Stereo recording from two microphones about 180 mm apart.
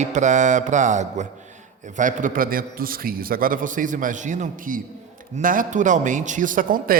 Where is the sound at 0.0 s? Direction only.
40° right (ahead or behind).